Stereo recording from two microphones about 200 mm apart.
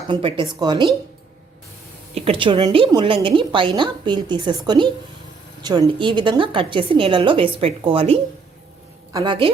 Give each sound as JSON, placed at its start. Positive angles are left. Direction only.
{"t": 0.1, "sound": "a woman's voice", "side_deg": -25}
{"t": 2.1, "sound": "a woman's voice", "side_deg": -30}